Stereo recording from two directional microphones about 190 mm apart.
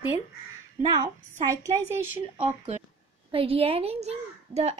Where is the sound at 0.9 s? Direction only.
20° right (ahead or behind).